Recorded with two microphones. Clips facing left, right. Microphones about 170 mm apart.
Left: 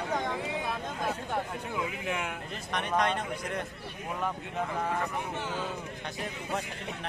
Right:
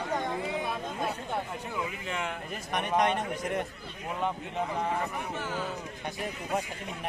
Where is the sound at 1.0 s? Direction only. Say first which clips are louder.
Left 2 dB; centre (ahead or behind).